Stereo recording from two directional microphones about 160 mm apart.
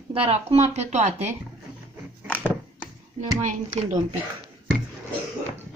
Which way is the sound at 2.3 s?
10° left (ahead or behind).